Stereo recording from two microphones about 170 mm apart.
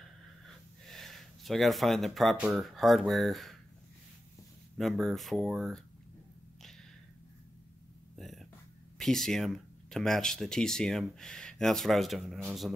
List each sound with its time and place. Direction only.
0.8 s speech: centre (ahead or behind)
4.7 s speech: centre (ahead or behind)
8.2 s a sound: centre (ahead or behind)
8.9 s speech: 5° left (ahead or behind)